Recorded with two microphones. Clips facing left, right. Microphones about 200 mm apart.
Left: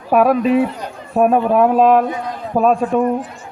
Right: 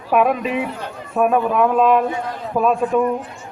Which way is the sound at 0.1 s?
35° left (ahead or behind).